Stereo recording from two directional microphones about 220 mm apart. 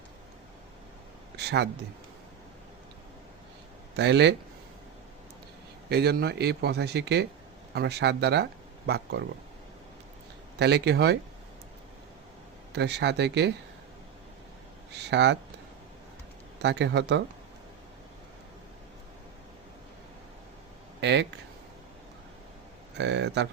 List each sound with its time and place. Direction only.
1.4 s speech: 50° right (ahead or behind)
3.9 s speech: 50° right (ahead or behind)
5.9 s speech: 45° right (ahead or behind)
10.6 s speech: 50° right (ahead or behind)
12.7 s speech: 50° right (ahead or behind)
14.9 s speech: 50° right (ahead or behind)
16.6 s speech: 55° right (ahead or behind)
21.0 s speech: 50° right (ahead or behind)
23.0 s speech: 50° right (ahead or behind)